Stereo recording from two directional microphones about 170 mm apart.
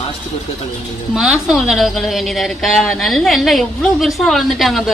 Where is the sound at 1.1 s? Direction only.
Centre (ahead or behind).